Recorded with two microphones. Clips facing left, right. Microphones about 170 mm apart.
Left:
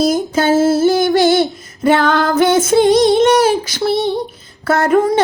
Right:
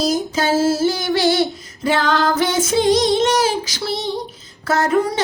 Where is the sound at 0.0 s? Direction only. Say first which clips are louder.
Left 5 dB; 55° left (ahead or behind).